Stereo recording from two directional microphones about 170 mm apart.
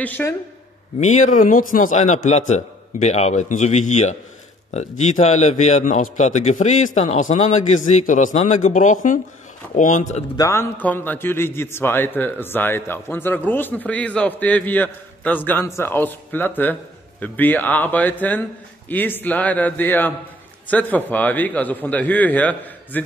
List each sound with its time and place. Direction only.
0.0 s a man's voice: 15° left (ahead or behind)
0.9 s a man's voice: 45° left (ahead or behind)
10.3 s a man's voice: 15° left (ahead or behind)